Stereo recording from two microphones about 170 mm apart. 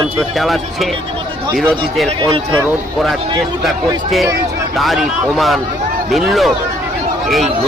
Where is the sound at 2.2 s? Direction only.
30° right (ahead or behind).